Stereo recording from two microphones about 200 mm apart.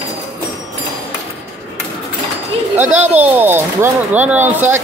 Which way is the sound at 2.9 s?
10° right (ahead or behind).